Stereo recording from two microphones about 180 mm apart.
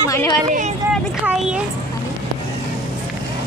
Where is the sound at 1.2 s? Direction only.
5° right (ahead or behind).